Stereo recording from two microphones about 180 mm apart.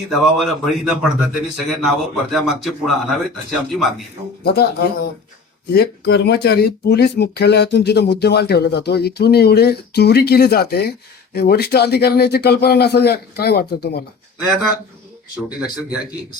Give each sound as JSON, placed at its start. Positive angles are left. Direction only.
{"t": 0.1, "sound": "a man's voice", "side_deg": 0}
{"t": 4.4, "sound": "speech", "side_deg": 60}